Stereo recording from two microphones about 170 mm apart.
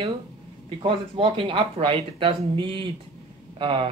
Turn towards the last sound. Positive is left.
turn(degrees=-30)  # may be behind; listen again after turning